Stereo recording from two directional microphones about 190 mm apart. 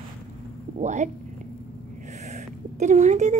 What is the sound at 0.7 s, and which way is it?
Speech, 40° right (ahead or behind).